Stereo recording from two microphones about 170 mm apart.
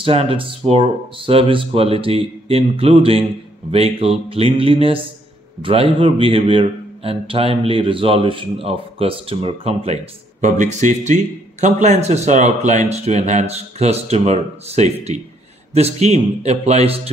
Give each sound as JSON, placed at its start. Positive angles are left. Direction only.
{"t": 0.0, "sound": "a man's voice", "side_deg": -30}
{"t": 10.4, "sound": "a man's voice", "side_deg": -45}